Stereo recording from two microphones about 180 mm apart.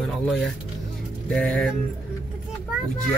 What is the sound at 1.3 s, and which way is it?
Speech, 5° left (ahead or behind).